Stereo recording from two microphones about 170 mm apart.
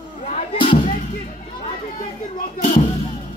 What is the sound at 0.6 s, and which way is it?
Music, 30° left (ahead or behind).